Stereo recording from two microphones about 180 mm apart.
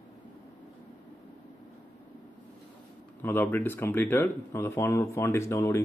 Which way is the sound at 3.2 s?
10° left (ahead or behind).